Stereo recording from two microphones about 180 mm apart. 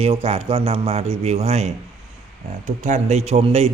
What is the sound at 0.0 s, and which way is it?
A man's voice, 35° right (ahead or behind).